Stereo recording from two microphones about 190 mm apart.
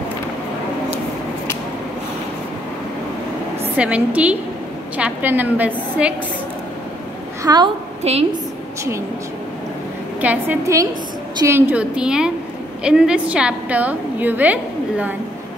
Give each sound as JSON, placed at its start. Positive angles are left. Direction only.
{"t": 3.7, "sound": "a woman's voice", "side_deg": -5}
{"t": 7.4, "sound": "a woman's voice", "side_deg": -20}
{"t": 8.0, "sound": "a woman's voice", "side_deg": -35}
{"t": 10.2, "sound": "a woman's voice", "side_deg": -10}